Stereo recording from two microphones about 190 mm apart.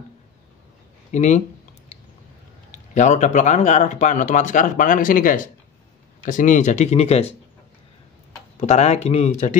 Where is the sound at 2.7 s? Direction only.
40° left (ahead or behind).